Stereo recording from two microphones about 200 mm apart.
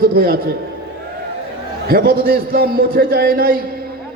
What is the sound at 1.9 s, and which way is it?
A man's voice, 50° right (ahead or behind).